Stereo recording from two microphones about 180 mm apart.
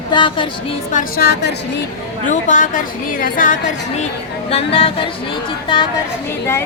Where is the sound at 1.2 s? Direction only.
65° left (ahead or behind).